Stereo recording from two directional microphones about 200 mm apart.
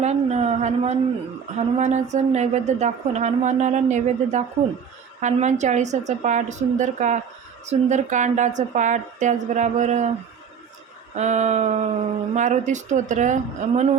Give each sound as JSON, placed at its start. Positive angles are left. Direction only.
{"t": 0.0, "sound": "a woman's voice", "side_deg": -35}
{"t": 11.1, "sound": "a woman's voice", "side_deg": -35}